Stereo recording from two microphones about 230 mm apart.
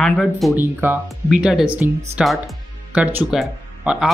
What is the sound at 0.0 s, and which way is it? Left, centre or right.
Speech, centre.